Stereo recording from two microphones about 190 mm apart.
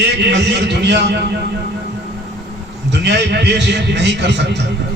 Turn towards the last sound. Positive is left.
turn(degrees=-65)  # may be behind; listen again after turning